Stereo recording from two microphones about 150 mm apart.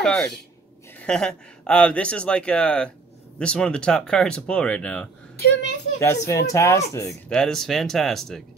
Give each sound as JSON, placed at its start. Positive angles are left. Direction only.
{"t": 0.0, "sound": "speech", "side_deg": 5}
{"t": 5.9, "sound": "speech", "side_deg": 20}
{"t": 7.2, "sound": "speech", "side_deg": 5}